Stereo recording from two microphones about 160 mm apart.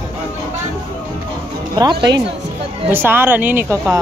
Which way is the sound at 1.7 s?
25° right (ahead or behind).